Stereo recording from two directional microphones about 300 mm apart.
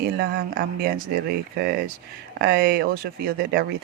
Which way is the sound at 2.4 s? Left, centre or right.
Right.